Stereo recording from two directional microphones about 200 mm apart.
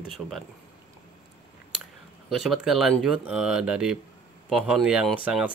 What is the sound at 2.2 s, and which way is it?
Speech, centre (ahead or behind).